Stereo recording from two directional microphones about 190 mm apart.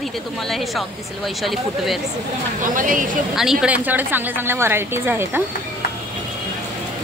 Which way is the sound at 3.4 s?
5° right (ahead or behind).